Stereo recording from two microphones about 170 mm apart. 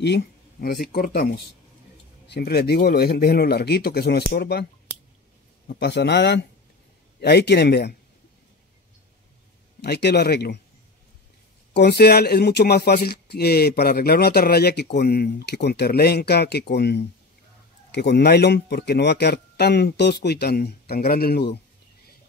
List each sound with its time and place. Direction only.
0.0 s speech: 70° left (ahead or behind)
5.8 s speech: 90° left
7.2 s speech: 75° left (ahead or behind)
9.8 s speech: 75° left (ahead or behind)
11.7 s speech: 75° left (ahead or behind)